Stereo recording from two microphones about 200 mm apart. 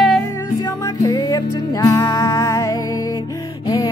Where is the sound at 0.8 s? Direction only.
20° left (ahead or behind).